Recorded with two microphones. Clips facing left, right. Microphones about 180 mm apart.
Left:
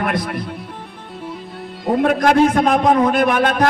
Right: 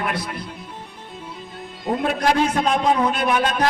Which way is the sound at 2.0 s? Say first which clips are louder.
Left 6 dB; 55° left (ahead or behind).